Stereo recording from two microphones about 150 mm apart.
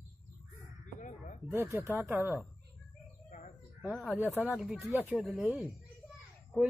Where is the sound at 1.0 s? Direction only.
55° left (ahead or behind).